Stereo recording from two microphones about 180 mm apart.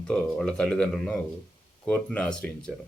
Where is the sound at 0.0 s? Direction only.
5° left (ahead or behind).